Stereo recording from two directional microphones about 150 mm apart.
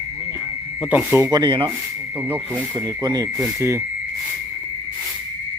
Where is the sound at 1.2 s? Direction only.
30° right (ahead or behind).